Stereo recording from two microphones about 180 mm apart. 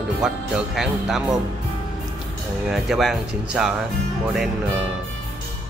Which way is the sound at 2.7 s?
Centre (ahead or behind).